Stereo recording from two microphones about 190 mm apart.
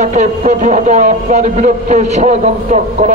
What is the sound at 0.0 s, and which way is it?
A man's voice, 40° right (ahead or behind).